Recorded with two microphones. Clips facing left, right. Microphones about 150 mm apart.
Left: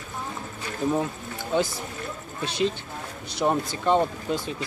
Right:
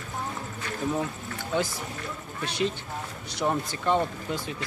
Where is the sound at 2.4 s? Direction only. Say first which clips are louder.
Left 3 dB; 25° left (ahead or behind).